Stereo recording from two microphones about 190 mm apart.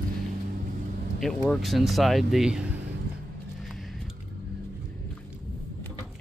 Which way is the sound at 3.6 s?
Centre (ahead or behind).